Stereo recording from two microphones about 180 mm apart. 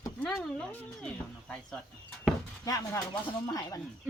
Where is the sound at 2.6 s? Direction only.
20° left (ahead or behind).